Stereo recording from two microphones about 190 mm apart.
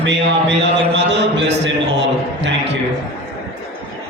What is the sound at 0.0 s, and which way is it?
A man's voice, 65° right (ahead or behind).